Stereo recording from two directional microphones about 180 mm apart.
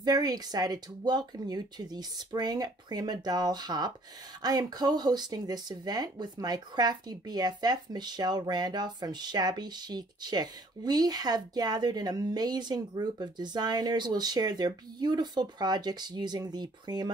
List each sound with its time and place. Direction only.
0.0 s speech: 20° right (ahead or behind)